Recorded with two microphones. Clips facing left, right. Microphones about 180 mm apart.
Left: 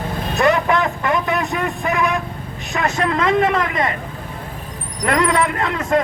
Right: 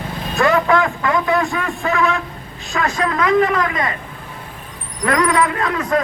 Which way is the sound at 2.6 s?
20° left (ahead or behind).